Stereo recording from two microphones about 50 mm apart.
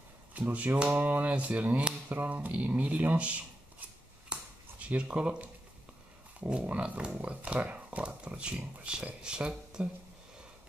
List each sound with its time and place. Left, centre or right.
0.3 s speech: right
4.3 s a sound: right
6.5 s speech: right